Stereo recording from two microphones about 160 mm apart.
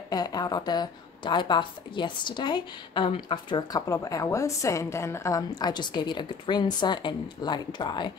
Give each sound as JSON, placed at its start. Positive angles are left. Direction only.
{"t": 0.1, "sound": "a woman's voice", "side_deg": 25}